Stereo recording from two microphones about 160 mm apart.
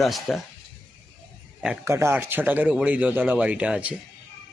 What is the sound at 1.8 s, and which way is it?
Speech, 15° right (ahead or behind).